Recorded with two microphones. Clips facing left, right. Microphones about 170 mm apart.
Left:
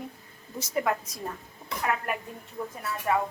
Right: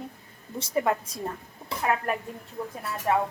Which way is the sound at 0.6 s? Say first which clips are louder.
Right 2 dB; 30° right (ahead or behind).